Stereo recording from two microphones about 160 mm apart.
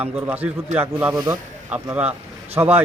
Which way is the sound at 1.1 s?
25° right (ahead or behind).